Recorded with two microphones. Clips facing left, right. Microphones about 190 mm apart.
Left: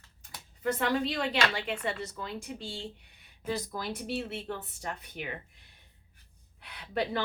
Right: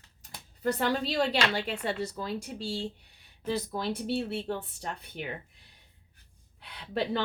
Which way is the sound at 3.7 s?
30° right (ahead or behind).